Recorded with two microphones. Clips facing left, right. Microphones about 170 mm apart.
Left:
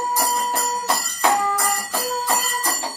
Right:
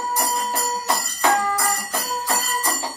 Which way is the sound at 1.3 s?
15° left (ahead or behind).